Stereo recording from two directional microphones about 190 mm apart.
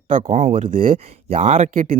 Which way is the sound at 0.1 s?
40° right (ahead or behind).